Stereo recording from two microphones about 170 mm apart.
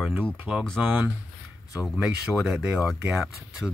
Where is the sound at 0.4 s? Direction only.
5° right (ahead or behind).